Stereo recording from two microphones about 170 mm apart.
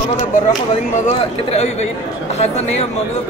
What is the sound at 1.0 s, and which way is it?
A man's voice, 40° left (ahead or behind).